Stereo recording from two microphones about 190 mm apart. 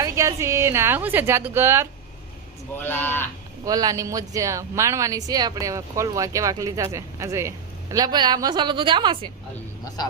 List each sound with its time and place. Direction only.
0.0 s a woman's voice: 15° right (ahead or behind)
2.8 s speech: 10° left (ahead or behind)
3.6 s speech: 20° right (ahead or behind)